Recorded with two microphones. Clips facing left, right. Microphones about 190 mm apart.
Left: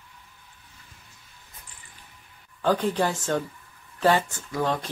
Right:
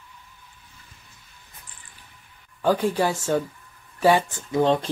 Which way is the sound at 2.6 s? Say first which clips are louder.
Right 2 dB; 10° right (ahead or behind).